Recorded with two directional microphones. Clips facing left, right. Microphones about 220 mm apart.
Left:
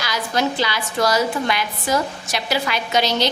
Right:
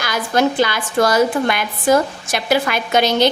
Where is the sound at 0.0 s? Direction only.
50° right (ahead or behind).